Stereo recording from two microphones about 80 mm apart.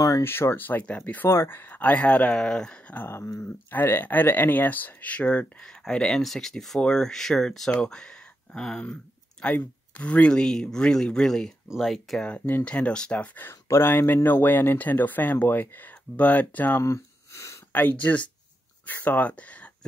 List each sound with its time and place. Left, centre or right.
0.2 s speech: left; by 2.8 s centre
2.9 s a sound: left
3.7 s speech: left; by 8.8 s centre
8.8 s speech: centre
12.3 s speech: left
13.5 s speech: left
16.8 s a sound: left
17.7 s speech: left